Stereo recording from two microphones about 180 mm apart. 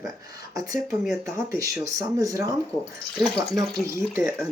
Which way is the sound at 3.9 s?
15° right (ahead or behind).